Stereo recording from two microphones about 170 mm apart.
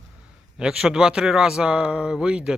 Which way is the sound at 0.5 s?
5° right (ahead or behind).